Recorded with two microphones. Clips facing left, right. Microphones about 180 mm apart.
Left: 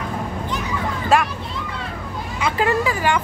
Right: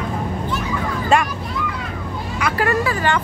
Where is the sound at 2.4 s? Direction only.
20° left (ahead or behind).